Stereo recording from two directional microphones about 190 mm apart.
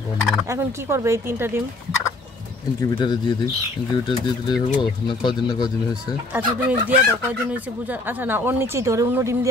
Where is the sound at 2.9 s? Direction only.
25° left (ahead or behind).